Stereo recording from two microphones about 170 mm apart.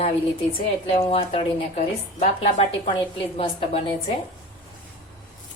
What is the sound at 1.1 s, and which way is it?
A woman's voice, 35° left (ahead or behind).